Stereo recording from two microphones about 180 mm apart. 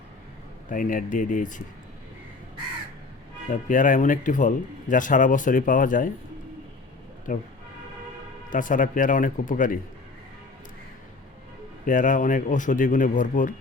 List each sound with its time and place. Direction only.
0.7 s a man's voice: 45° left (ahead or behind)
3.5 s a man's voice: 45° left (ahead or behind)
7.3 s a man's voice: 50° left (ahead or behind)
8.4 s a man's voice: 45° left (ahead or behind)
11.9 s a man's voice: 45° left (ahead or behind)